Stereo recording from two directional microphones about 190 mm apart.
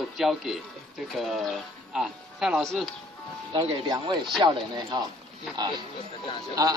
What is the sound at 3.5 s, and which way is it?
Speech, 20° right (ahead or behind).